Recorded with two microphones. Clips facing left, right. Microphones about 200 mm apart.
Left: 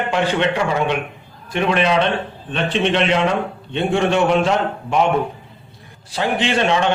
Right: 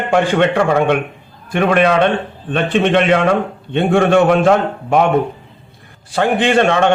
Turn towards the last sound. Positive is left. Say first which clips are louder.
# right 5 dB
turn(degrees=-55)  # may be behind; listen again after turning